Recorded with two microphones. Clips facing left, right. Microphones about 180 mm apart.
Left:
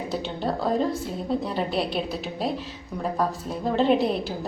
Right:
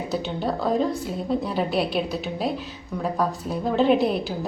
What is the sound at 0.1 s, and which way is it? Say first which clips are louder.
A woman's voice: right 2 dB; centre (ahead or behind).